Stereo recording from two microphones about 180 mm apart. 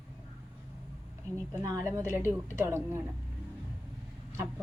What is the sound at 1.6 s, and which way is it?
A woman's voice, 15° right (ahead or behind).